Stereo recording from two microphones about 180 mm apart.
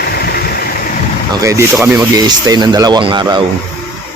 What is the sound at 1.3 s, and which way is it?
Speech, 15° right (ahead or behind).